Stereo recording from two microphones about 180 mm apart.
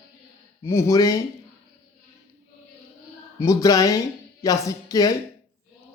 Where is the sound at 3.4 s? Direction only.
20° left (ahead or behind).